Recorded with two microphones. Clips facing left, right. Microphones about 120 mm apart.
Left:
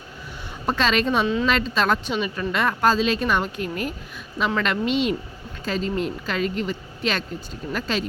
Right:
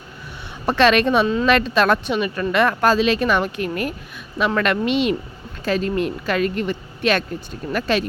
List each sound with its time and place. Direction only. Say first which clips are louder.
0.7 s speech: right 6 dB; 70° right (ahead or behind)